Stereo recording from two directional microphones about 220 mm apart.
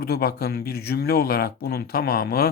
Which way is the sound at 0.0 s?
45° left (ahead or behind).